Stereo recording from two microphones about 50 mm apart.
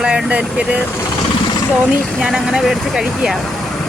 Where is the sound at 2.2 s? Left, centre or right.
Centre.